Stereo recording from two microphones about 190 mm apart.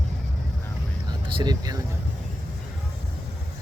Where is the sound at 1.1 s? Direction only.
20° right (ahead or behind).